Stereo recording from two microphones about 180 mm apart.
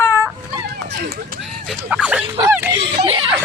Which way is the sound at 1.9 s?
5° right (ahead or behind).